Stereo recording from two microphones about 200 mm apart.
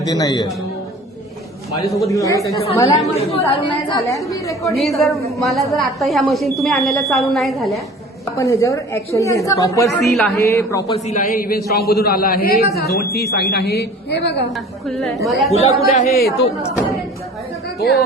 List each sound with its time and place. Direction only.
0.0 s a woman's voice: 20° left (ahead or behind)
2.0 s a woman's voice: 15° left (ahead or behind)
3.2 s a woman's voice: 30° left (ahead or behind)
4.8 s a woman's voice: centre (ahead or behind)
8.2 s a woman's voice: 15° left (ahead or behind)
10.0 s a woman's voice: centre (ahead or behind)
10.3 s a woman's voice: 15° left (ahead or behind)
10.9 s a man's voice: 35° left (ahead or behind); by 14.5 s 60° left (ahead or behind)
14.5 s a woman's voice: centre (ahead or behind)
15.4 s speech: 30° left (ahead or behind)
17.7 s a woman's voice: 55° left (ahead or behind)